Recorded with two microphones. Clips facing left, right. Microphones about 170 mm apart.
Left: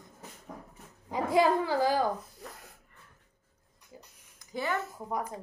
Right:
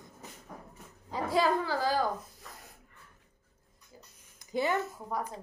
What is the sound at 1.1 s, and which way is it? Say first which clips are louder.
Speech: left 3 dB; 20° left (ahead or behind).